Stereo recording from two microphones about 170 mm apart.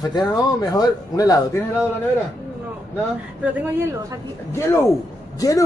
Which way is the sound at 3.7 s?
15° right (ahead or behind).